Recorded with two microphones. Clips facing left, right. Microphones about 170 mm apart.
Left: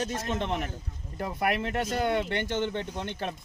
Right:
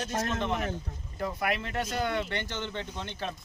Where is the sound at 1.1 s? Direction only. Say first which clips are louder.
Left 2 dB; 50° left (ahead or behind).